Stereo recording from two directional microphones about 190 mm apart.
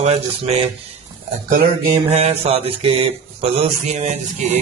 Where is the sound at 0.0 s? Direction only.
30° right (ahead or behind).